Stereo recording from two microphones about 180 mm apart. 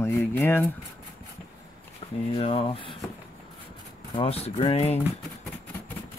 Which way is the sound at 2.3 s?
30° left (ahead or behind).